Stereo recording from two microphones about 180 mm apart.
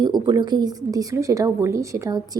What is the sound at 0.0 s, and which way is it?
A woman's voice, 25° right (ahead or behind).